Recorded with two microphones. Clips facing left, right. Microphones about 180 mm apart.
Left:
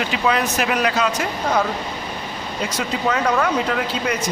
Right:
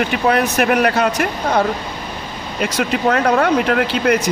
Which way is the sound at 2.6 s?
65° right (ahead or behind).